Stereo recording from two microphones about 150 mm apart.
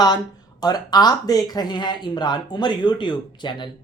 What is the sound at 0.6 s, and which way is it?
Speech, 25° left (ahead or behind).